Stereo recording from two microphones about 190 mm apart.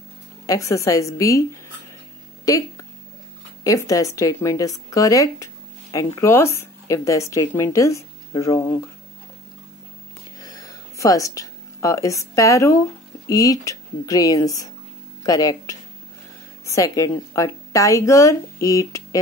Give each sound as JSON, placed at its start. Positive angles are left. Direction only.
{"t": 0.5, "sound": "a woman's voice", "side_deg": 15}
{"t": 2.4, "sound": "a woman's voice", "side_deg": 20}
{"t": 10.4, "sound": "a sound", "side_deg": 20}
{"t": 13.3, "sound": "a woman's voice", "side_deg": 20}